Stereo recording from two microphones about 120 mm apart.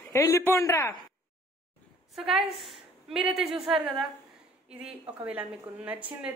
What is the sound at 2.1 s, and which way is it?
A woman's voice, centre (ahead or behind).